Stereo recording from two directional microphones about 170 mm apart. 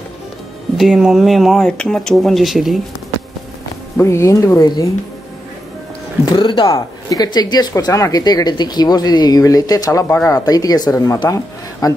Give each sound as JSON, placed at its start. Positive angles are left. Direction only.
{"t": 0.7, "sound": "speech", "side_deg": -5}
{"t": 3.9, "sound": "speech", "side_deg": 15}
{"t": 6.3, "sound": "speech", "side_deg": 30}